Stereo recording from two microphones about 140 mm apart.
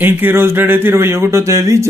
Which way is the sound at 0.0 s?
15° right (ahead or behind).